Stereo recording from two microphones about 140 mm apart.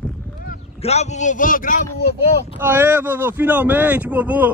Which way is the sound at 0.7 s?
50° left (ahead or behind).